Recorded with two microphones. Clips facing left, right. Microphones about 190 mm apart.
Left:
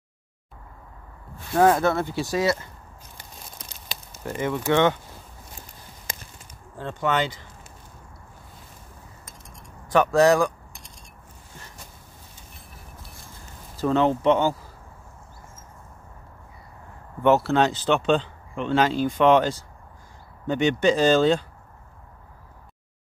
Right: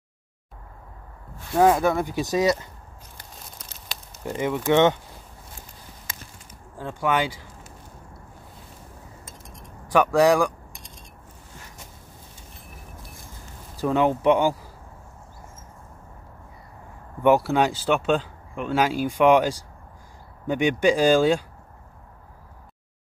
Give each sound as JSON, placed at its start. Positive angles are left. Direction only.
{"t": 1.5, "sound": "speech", "side_deg": -10}
{"t": 4.2, "sound": "speech", "side_deg": -15}
{"t": 6.8, "sound": "speech", "side_deg": -10}
{"t": 9.5, "sound": "keys jangling", "side_deg": -15}
{"t": 13.7, "sound": "speech", "side_deg": -10}
{"t": 17.2, "sound": "speech", "side_deg": -10}